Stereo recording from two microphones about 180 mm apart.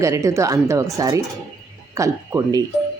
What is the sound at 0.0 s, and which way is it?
Speech, 15° right (ahead or behind).